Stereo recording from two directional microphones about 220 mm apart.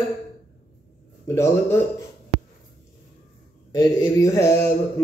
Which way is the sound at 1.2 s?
10° left (ahead or behind).